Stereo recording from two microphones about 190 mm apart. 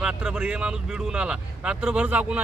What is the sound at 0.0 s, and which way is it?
Speech, 5° right (ahead or behind).